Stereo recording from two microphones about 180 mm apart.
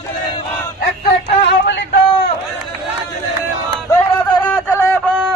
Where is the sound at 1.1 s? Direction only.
70° left (ahead or behind).